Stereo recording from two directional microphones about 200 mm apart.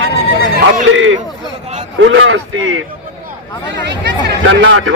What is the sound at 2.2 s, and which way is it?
Speech, 75° right (ahead or behind).